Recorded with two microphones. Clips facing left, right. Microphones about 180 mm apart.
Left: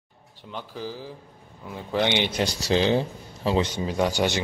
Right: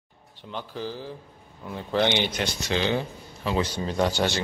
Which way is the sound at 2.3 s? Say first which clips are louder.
Left 4 dB; 35° left (ahead or behind).